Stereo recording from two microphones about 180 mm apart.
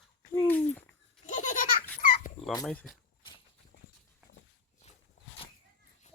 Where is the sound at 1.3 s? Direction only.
45° left (ahead or behind).